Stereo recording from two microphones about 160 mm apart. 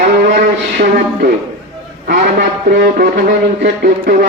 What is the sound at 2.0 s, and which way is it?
A man's voice, 65° right (ahead or behind).